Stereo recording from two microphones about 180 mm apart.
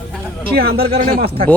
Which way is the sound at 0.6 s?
60° right (ahead or behind).